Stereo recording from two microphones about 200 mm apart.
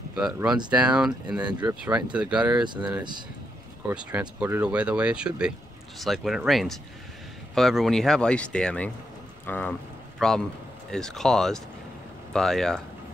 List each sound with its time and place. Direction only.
0.1 s speech: 5° right (ahead or behind)
1.5 s speech: 20° right (ahead or behind)
2.1 s speech: 5° right (ahead or behind)
2.6 s speech: 20° right (ahead or behind)
3.8 s speech: 5° right (ahead or behind)